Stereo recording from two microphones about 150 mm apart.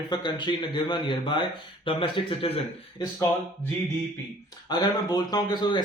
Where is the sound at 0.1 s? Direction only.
30° left (ahead or behind).